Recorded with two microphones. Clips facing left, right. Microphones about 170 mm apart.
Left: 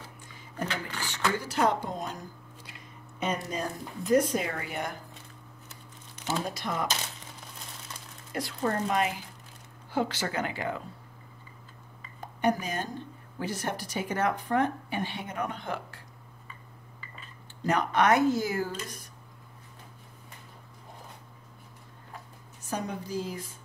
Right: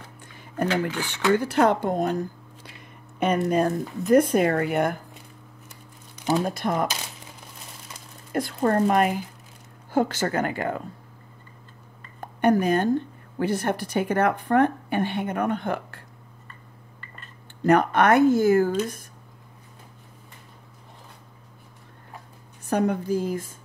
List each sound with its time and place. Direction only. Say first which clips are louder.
0.8 s speech: right 6 dB; centre (ahead or behind)
1.4 s a woman's voice: right 7 dB; 60° right (ahead or behind)
5.7 s crumpling: right 2 dB; 15° right (ahead or behind)
6.4 s speech: right 7 dB; 50° right (ahead or behind)
8.3 s speech: right 7 dB; 50° right (ahead or behind)
12.2 s a woman's voice: right 7 dB; 55° right (ahead or behind)
17.0 s a sound: right 1 dB; centre (ahead or behind)
17.6 s speech: right 6 dB; 55° right (ahead or behind)
22.7 s a woman's voice: right 11 dB; 60° right (ahead or behind)